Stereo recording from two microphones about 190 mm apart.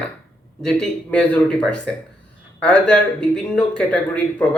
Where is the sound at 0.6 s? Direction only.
5° left (ahead or behind).